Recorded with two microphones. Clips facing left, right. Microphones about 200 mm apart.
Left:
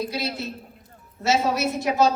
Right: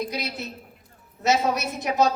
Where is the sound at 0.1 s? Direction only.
20° right (ahead or behind).